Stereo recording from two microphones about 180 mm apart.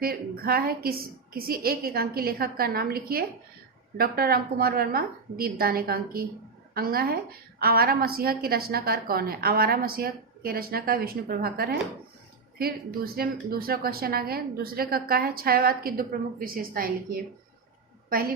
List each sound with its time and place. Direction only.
0.0 s a woman's voice: 55° right (ahead or behind)